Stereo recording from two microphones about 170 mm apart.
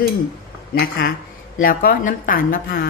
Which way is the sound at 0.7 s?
60° left (ahead or behind).